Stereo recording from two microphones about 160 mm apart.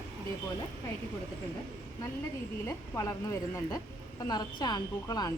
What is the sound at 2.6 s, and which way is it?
A woman's voice, 20° left (ahead or behind).